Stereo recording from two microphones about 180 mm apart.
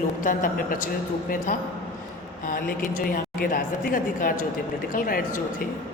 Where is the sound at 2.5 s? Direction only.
50° left (ahead or behind).